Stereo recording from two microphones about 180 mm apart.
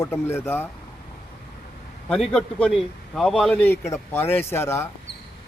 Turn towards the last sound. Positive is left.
turn(degrees=15)  # may be behind; listen again after turning